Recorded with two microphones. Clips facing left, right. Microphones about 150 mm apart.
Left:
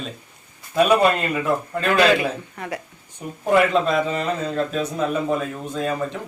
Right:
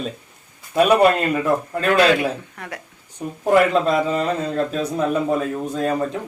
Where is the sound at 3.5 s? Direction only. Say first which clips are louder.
Right 2 dB; 40° right (ahead or behind).